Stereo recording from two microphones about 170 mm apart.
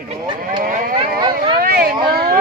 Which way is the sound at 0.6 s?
55° right (ahead or behind).